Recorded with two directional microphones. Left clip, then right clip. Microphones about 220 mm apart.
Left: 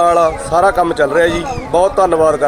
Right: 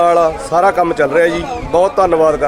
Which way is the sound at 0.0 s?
Centre (ahead or behind).